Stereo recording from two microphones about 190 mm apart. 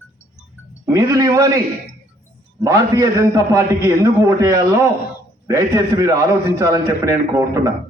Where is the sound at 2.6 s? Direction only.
15° right (ahead or behind).